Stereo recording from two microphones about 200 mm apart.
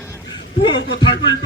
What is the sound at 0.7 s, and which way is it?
Speech, 60° left (ahead or behind).